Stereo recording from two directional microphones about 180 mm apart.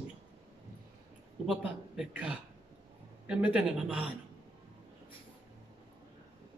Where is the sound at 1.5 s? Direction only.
5° right (ahead or behind).